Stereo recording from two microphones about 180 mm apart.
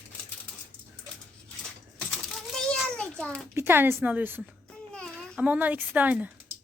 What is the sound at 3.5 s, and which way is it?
A woman's voice, 10° right (ahead or behind).